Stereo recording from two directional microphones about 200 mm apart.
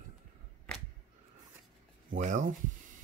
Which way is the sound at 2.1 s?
40° right (ahead or behind).